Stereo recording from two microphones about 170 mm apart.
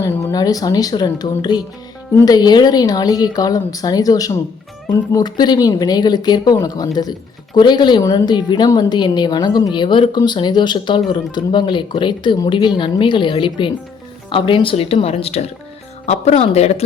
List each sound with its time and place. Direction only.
0.0 s a woman's voice: 20° left (ahead or behind); by 16.8 s 35° left (ahead or behind)